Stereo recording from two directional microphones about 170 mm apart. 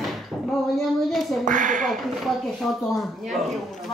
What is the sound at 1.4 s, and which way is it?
Speech, 50° right (ahead or behind).